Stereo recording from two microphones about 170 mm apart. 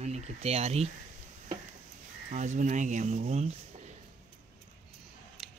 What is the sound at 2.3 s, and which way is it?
Speech, 45° right (ahead or behind).